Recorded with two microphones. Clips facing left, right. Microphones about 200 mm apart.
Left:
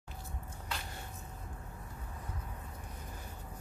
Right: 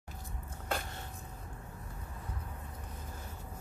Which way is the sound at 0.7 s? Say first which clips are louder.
Right 7 dB; 50° right (ahead or behind).